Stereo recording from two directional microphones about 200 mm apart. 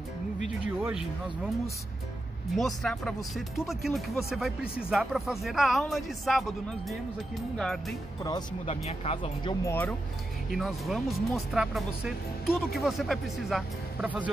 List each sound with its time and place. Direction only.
0.7 s speech: 5° right (ahead or behind)
2.5 s speech: centre (ahead or behind)
8.2 s speech: 20° left (ahead or behind)
8.6 s speech: 30° left (ahead or behind)
9.7 s speech: 10° left (ahead or behind)
10.5 s speech: centre (ahead or behind)